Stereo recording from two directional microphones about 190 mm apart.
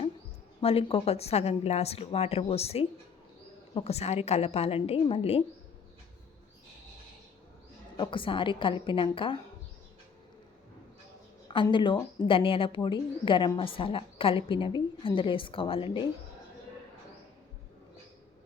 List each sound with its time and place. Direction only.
0.6 s a woman's voice: 30° left (ahead or behind)
7.9 s speech: 25° left (ahead or behind)
11.4 s speech: 25° left (ahead or behind)